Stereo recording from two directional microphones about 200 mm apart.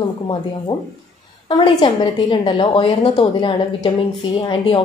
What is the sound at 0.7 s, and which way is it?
A woman's voice, 20° left (ahead or behind).